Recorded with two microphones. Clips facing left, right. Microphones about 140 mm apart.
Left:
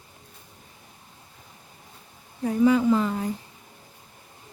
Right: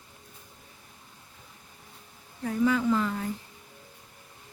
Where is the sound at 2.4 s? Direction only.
20° left (ahead or behind).